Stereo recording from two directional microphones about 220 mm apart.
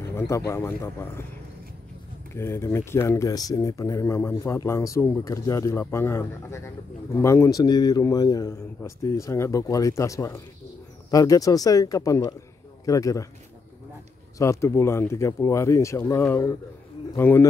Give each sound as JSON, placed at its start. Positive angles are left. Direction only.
{"t": 0.5, "sound": "speech", "side_deg": 10}
{"t": 2.3, "sound": "speech", "side_deg": 10}
{"t": 14.4, "sound": "speech", "side_deg": 15}